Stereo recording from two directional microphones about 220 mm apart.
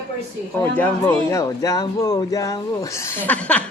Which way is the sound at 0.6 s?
10° left (ahead or behind).